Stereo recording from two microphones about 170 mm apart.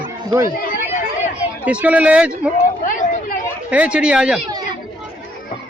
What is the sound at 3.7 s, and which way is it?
Speech, 5° right (ahead or behind).